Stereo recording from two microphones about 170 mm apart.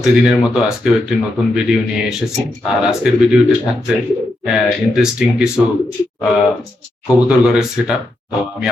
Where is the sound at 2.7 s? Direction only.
5° right (ahead or behind).